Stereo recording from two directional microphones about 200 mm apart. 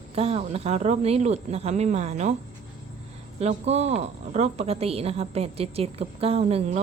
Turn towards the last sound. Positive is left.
turn(degrees=-30)  # may be behind; listen again after turning